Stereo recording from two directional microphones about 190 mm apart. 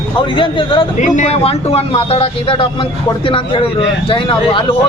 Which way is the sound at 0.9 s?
40° left (ahead or behind).